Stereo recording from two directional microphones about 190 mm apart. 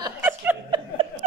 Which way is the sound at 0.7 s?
20° right (ahead or behind).